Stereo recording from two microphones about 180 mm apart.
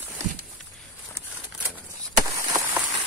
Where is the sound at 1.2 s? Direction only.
15° left (ahead or behind).